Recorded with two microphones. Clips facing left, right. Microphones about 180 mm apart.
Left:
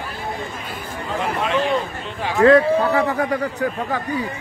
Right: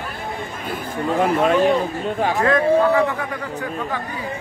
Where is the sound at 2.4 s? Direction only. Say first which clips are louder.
Left 4 dB; 35° left (ahead or behind).